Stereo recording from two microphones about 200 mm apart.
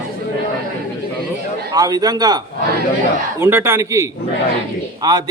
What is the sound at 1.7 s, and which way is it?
Speech, 20° right (ahead or behind).